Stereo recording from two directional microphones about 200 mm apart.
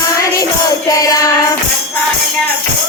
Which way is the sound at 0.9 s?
15° left (ahead or behind).